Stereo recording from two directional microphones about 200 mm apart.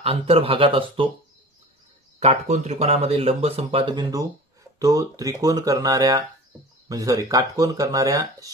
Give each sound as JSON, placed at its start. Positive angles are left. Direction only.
{"t": 0.0, "sound": "speech", "side_deg": -30}
{"t": 2.1, "sound": "speech", "side_deg": -35}